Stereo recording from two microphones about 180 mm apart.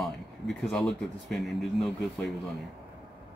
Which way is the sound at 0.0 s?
Centre (ahead or behind).